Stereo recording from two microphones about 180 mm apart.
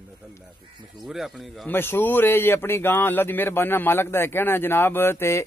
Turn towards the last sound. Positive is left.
turn(degrees=15)  # may be behind; listen again after turning